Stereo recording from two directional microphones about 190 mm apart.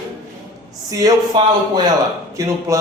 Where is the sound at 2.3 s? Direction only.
15° right (ahead or behind).